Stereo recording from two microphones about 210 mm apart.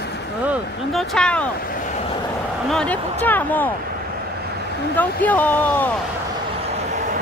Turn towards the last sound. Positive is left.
turn(degrees=10)  # may be behind; listen again after turning